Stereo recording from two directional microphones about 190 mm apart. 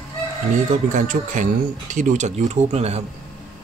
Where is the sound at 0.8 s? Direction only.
45° right (ahead or behind).